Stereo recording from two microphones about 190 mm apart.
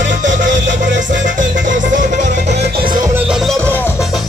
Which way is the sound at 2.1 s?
35° right (ahead or behind).